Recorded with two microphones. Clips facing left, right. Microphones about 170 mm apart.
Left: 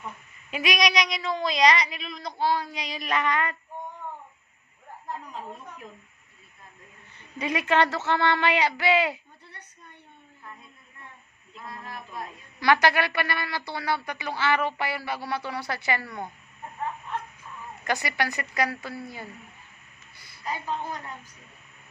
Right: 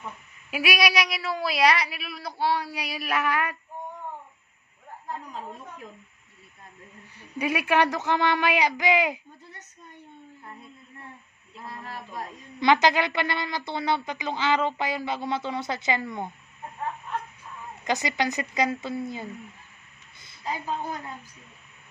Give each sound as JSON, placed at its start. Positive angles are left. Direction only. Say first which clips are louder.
{"t": 0.5, "sound": "a woman's voice", "louder": "even", "side_deg": -5}
{"t": 7.2, "sound": "a woman's voice", "louder": "right 2 dB", "side_deg": -10}
{"t": 11.6, "sound": "a sound", "louder": "right 1 dB", "side_deg": -35}
{"t": 12.5, "sound": "a woman's voice", "louder": "right 1 dB", "side_deg": -20}
{"t": 17.8, "sound": "a woman's voice", "louder": "right 2 dB", "side_deg": -20}